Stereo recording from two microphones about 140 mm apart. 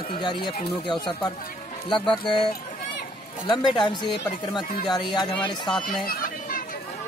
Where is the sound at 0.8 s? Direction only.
35° left (ahead or behind).